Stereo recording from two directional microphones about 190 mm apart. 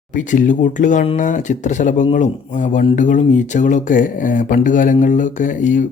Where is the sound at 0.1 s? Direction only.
40° left (ahead or behind).